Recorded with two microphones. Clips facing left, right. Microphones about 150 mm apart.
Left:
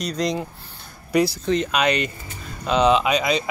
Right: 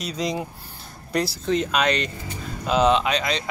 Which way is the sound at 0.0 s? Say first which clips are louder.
Left 3 dB; 5° right (ahead or behind).